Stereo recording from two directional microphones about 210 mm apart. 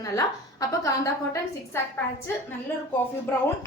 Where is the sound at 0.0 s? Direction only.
15° left (ahead or behind).